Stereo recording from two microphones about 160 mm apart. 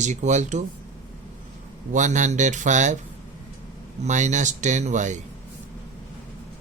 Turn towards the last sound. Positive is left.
turn(degrees=-50)  # may be behind; listen again after turning